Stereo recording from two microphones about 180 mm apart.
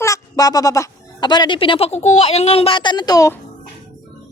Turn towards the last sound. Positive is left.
turn(degrees=20)  # may be behind; listen again after turning